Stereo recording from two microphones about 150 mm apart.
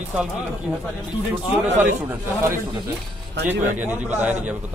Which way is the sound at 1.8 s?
15° right (ahead or behind).